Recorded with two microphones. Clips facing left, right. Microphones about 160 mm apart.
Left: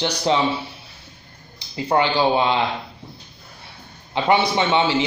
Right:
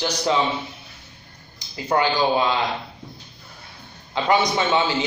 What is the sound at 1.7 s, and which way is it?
Speech, 25° left (ahead or behind).